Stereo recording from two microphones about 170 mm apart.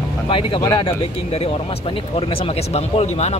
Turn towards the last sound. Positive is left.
turn(degrees=40)  # may be behind; listen again after turning